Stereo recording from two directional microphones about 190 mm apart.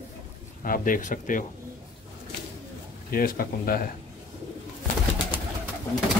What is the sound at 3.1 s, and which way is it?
Speech, 50° left (ahead or behind).